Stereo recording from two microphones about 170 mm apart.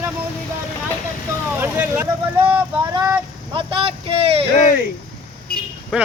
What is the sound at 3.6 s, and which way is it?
Speech, 35° right (ahead or behind).